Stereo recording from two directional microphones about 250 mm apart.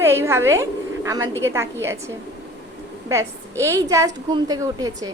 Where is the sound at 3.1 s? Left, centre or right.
Centre.